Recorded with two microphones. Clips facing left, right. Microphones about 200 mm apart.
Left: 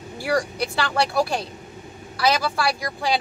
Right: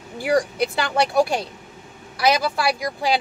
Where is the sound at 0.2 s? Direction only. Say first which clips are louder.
Right 4 dB; 20° right (ahead or behind).